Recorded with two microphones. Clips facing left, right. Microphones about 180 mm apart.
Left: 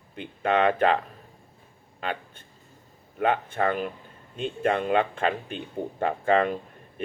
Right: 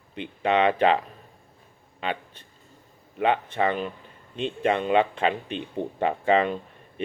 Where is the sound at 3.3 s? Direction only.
45° left (ahead or behind).